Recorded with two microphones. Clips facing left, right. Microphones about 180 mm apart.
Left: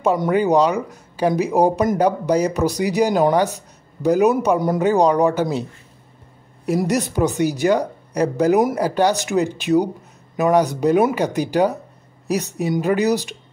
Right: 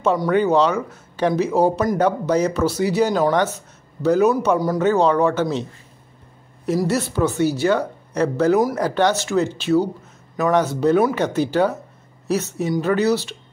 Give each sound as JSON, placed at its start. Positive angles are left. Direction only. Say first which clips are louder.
{"t": 0.3, "sound": "speech", "louder": "even", "side_deg": 10}
{"t": 6.8, "sound": "speech", "louder": "left 1 dB", "side_deg": 15}